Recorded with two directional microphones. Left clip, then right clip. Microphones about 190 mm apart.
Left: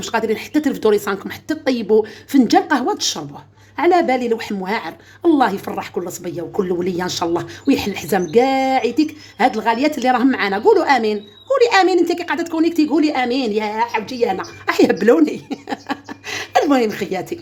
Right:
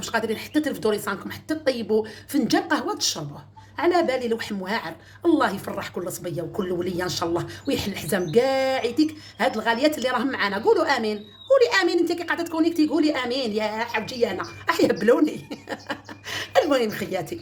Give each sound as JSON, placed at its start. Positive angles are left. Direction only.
{"t": 0.0, "sound": "a woman's voice", "side_deg": 40}